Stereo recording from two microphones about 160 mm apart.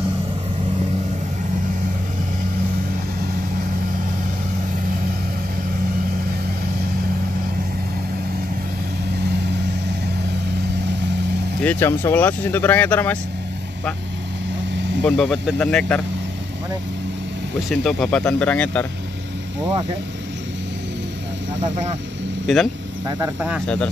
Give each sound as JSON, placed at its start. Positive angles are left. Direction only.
{"t": 11.6, "sound": "speech", "side_deg": 15}
{"t": 15.0, "sound": "speech", "side_deg": 5}
{"t": 17.6, "sound": "speech", "side_deg": 0}
{"t": 22.5, "sound": "speech", "side_deg": 0}
{"t": 23.0, "sound": "speech", "side_deg": -20}